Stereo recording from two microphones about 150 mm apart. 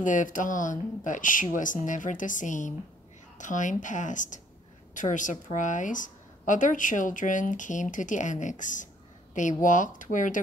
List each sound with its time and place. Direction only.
0.0 s a woman's voice: 60° left (ahead or behind)